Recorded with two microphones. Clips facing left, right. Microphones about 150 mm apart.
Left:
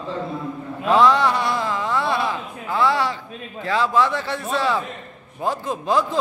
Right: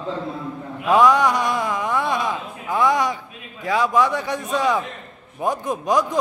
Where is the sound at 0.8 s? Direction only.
15° right (ahead or behind).